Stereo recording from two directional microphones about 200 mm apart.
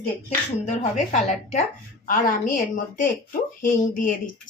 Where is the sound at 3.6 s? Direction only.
45° left (ahead or behind).